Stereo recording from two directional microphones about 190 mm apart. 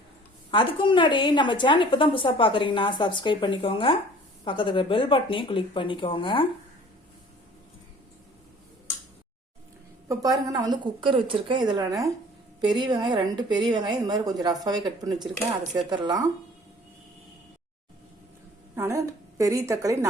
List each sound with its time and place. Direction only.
0.5 s a woman's voice: 25° left (ahead or behind)
10.1 s a woman's voice: 20° right (ahead or behind)
18.8 s a woman's voice: 15° right (ahead or behind)